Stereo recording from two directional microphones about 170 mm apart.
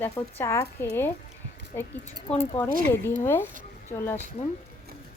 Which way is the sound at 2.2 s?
40° left (ahead or behind).